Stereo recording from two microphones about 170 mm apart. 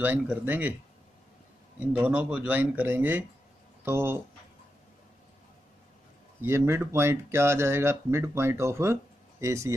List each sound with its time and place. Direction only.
0.0 s speech: 10° right (ahead or behind)
2.0 s speech: 10° right (ahead or behind)
6.4 s speech: 15° right (ahead or behind)